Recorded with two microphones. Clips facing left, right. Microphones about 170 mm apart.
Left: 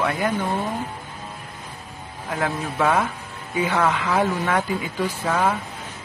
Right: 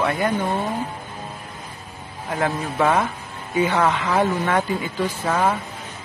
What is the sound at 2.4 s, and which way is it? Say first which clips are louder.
Speech: right 2 dB; 5° right (ahead or behind).